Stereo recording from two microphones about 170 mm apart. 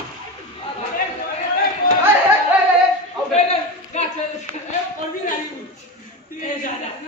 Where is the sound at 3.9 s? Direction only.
40° left (ahead or behind).